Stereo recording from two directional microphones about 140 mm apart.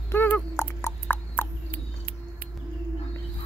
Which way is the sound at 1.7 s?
90° right.